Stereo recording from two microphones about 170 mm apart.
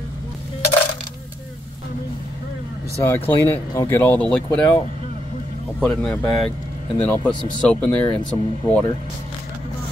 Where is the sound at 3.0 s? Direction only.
15° left (ahead or behind).